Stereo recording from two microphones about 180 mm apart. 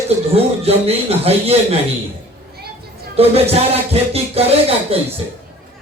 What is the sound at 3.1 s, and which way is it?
Speech, 35° right (ahead or behind).